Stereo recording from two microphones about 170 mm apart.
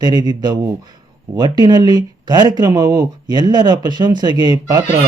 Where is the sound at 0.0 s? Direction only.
20° right (ahead or behind).